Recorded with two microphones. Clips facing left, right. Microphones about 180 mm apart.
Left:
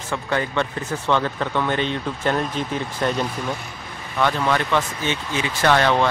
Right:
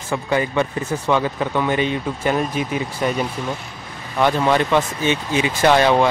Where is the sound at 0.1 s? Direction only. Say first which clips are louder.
Right 4 dB; 10° right (ahead or behind).